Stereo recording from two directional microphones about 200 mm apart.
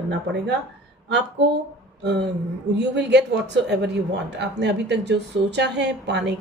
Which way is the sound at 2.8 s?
60° right (ahead or behind).